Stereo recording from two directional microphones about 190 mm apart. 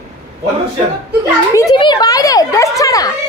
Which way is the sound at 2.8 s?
20° left (ahead or behind).